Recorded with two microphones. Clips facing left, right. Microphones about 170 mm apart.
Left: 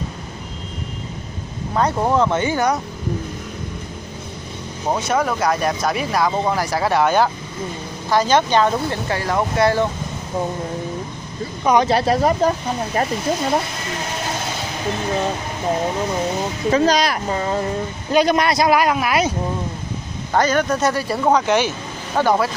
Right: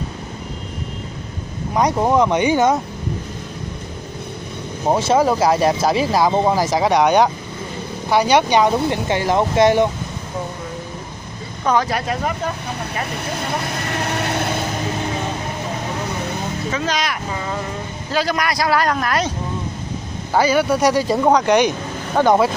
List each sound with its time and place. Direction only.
1.7 s speech: 15° right (ahead or behind)
4.8 s speech: 25° right (ahead or behind)
11.6 s speech: 15° left (ahead or behind)
11.9 s speech: 35° left (ahead or behind)
13.8 s vehicle: 65° right (ahead or behind)
16.7 s speech: 35° left (ahead or behind)
18.1 s speech: 20° left (ahead or behind)
18.8 s speech: 10° left (ahead or behind)
20.3 s speech: 10° right (ahead or behind)